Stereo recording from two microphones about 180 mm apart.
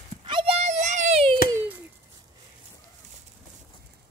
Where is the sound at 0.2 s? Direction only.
30° right (ahead or behind).